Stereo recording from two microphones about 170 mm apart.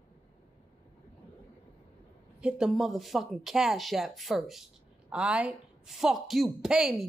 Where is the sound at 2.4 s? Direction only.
5° right (ahead or behind).